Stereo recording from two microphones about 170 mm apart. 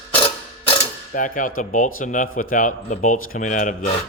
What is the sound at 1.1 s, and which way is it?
A man's voice, 50° left (ahead or behind).